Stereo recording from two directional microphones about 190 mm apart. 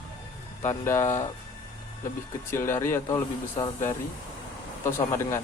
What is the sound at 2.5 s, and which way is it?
Speech, 15° left (ahead or behind).